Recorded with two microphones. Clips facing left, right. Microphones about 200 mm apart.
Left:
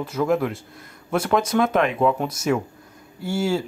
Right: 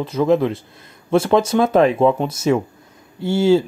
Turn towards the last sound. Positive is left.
turn(degrees=-25)  # may be behind; listen again after turning